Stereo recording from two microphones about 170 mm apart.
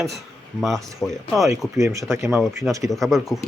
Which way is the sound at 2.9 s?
Centre (ahead or behind).